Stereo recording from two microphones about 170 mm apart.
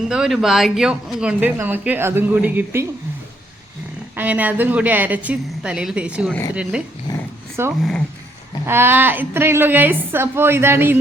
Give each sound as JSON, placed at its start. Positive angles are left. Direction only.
{"t": 0.1, "sound": "speech", "side_deg": -5}
{"t": 4.1, "sound": "speech", "side_deg": -10}
{"t": 7.1, "sound": "dog", "side_deg": 25}
{"t": 7.6, "sound": "speech", "side_deg": -15}